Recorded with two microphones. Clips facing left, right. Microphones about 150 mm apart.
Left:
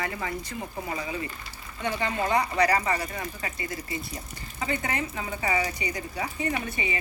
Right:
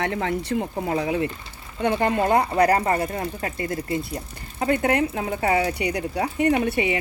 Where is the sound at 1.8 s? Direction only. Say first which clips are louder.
Right 7 dB; 55° right (ahead or behind).